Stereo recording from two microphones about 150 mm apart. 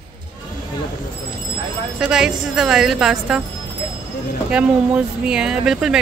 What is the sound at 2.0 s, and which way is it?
Speech, 5° right (ahead or behind).